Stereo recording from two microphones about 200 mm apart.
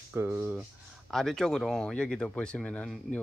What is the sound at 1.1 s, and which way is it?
Speech, centre (ahead or behind).